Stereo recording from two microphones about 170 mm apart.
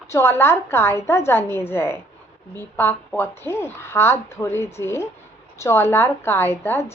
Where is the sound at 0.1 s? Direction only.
15° left (ahead or behind).